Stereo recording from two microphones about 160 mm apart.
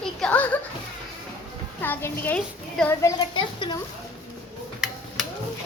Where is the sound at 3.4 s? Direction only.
30° left (ahead or behind).